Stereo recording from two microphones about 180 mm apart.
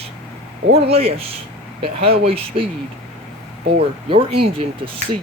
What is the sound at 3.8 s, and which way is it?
Speech, 30° right (ahead or behind).